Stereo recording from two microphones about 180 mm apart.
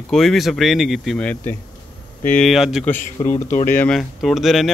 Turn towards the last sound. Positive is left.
turn(degrees=0)  # may be behind; listen again after turning